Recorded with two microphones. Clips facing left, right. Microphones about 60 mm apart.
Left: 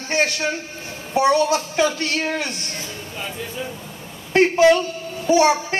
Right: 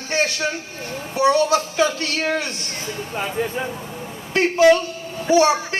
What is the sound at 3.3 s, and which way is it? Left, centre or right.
Speech, right.